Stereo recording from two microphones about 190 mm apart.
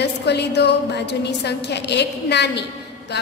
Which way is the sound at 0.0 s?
60° left (ahead or behind).